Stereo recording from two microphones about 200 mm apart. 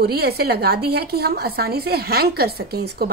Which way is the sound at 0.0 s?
50° right (ahead or behind).